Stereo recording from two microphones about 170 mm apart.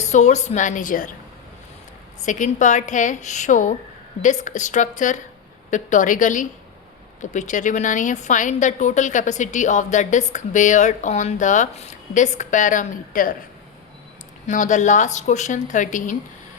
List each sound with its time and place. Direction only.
0.0 s a woman's voice: 45° left (ahead or behind)
2.2 s a woman's voice: 50° left (ahead or behind)
14.4 s a woman's voice: 45° left (ahead or behind)